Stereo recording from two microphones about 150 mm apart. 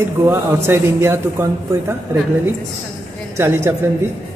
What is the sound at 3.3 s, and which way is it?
Speech, 15° right (ahead or behind).